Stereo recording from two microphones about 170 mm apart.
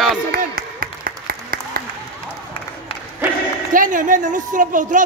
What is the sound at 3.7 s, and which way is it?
A woman's voice, 50° right (ahead or behind).